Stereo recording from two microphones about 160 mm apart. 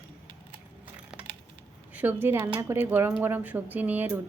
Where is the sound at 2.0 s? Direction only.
10° right (ahead or behind).